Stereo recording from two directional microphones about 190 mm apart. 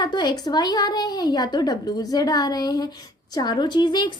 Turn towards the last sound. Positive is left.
turn(degrees=25)  # may be behind; listen again after turning